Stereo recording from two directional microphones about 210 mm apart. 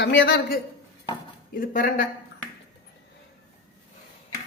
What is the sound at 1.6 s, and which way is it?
Speech, 40° left (ahead or behind).